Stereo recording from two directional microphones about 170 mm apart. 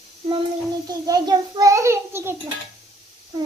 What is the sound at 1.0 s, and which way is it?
Child singing, 25° right (ahead or behind).